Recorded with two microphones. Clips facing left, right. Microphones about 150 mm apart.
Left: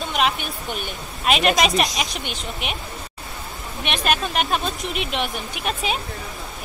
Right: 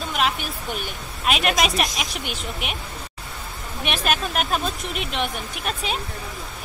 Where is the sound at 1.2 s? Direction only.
Centre (ahead or behind).